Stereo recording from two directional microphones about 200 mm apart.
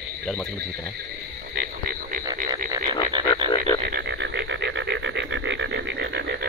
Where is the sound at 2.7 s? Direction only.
20° right (ahead or behind).